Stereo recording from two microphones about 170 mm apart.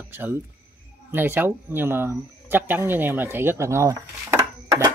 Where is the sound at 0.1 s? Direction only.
10° right (ahead or behind).